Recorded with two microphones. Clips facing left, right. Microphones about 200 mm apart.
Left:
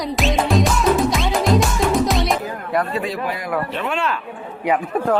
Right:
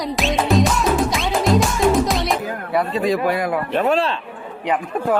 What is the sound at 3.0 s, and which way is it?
Speech, 50° right (ahead or behind).